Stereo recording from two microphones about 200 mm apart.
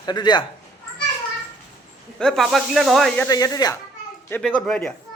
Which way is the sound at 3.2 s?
20° left (ahead or behind).